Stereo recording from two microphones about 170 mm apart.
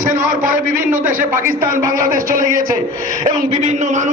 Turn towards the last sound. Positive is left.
turn(degrees=-45)  # may be behind; listen again after turning